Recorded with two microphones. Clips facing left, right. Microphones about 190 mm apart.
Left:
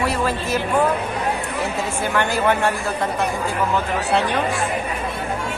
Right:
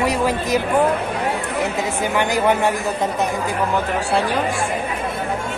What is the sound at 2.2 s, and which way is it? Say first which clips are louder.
Speech: right 1 dB; 15° right (ahead or behind).